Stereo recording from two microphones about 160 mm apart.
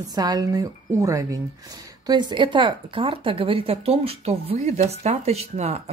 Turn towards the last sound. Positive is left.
turn(degrees=-40)  # may be behind; listen again after turning